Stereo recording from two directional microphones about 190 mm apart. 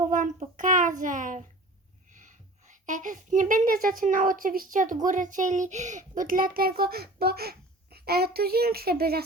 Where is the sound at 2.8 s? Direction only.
40° right (ahead or behind).